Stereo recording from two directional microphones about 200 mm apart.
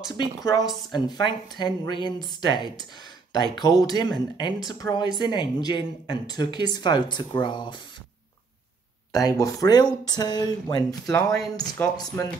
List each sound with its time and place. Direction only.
0.4 s speech: 20° left (ahead or behind)
9.1 s speech: 15° left (ahead or behind)
11.1 s speech: 5° left (ahead or behind)